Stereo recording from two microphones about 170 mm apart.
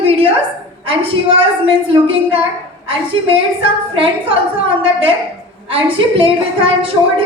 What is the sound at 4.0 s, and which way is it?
A woman's voice, 30° right (ahead or behind).